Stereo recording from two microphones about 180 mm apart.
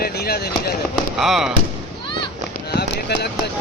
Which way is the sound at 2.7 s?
65° left (ahead or behind).